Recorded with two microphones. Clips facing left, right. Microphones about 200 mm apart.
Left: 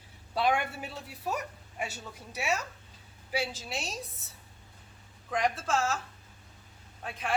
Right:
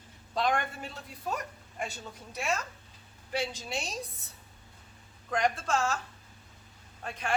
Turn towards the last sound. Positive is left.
turn(degrees=0)  # may be behind; listen again after turning